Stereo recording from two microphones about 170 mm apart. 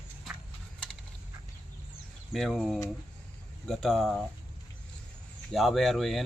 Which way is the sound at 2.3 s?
Centre (ahead or behind).